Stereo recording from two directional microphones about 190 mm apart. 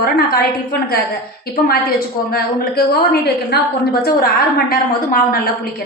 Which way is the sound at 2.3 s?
55° left (ahead or behind).